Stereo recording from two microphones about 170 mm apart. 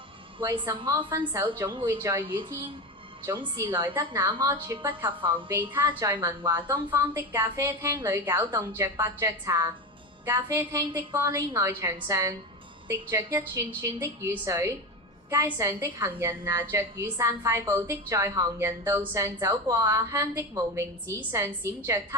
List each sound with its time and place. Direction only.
0.9 s a woman's voice: 15° right (ahead or behind)
3.3 s a woman's voice: 25° right (ahead or behind)